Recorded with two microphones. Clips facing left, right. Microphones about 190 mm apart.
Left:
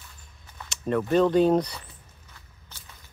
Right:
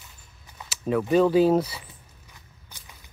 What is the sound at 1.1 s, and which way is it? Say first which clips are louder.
Speech: right 1 dB; 5° right (ahead or behind).